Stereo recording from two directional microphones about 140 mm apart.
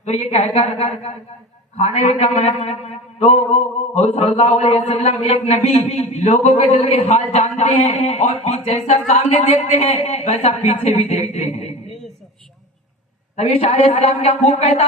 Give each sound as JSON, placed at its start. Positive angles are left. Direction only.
{"t": 0.0, "sound": "a man's voice", "side_deg": 50}
{"t": 13.3, "sound": "a man's voice", "side_deg": 50}